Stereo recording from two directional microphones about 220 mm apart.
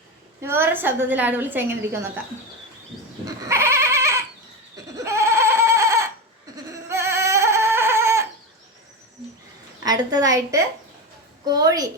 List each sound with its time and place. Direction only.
0.4 s a woman's voice: 10° right (ahead or behind)
3.2 s goat: 10° right (ahead or behind)
9.8 s a woman's voice: 20° right (ahead or behind)